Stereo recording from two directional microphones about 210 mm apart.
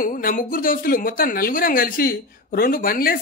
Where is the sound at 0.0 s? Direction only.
40° left (ahead or behind).